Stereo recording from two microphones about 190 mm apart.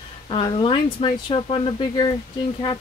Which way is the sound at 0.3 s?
25° left (ahead or behind).